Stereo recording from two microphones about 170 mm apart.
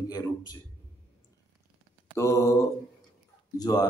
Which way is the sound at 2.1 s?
15° left (ahead or behind).